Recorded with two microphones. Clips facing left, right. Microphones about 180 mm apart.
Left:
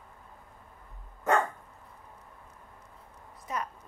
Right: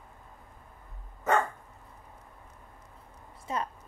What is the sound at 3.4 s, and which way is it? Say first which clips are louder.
Speech: right 2 dB; 30° right (ahead or behind).